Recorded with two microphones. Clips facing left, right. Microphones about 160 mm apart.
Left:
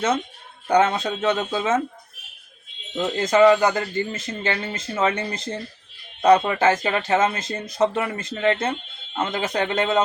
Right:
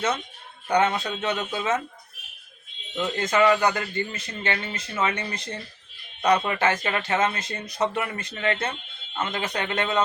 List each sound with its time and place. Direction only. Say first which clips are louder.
0.8 s speech: left 3 dB; 25° left (ahead or behind)
2.9 s speech: left 4 dB; 30° left (ahead or behind)